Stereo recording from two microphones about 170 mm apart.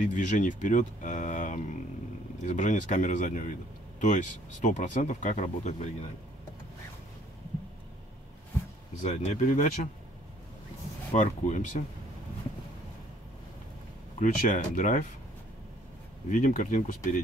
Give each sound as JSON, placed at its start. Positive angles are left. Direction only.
{"t": 0.0, "sound": "speech", "side_deg": 50}
{"t": 9.0, "sound": "speech", "side_deg": 45}
{"t": 11.1, "sound": "speech", "side_deg": 45}
{"t": 14.2, "sound": "speech", "side_deg": 50}
{"t": 16.3, "sound": "speech", "side_deg": 45}